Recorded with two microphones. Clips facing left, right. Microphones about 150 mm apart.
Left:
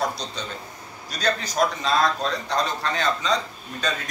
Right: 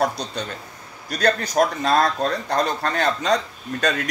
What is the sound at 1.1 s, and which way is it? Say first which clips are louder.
A man's voice: right 5 dB; 60° right (ahead or behind).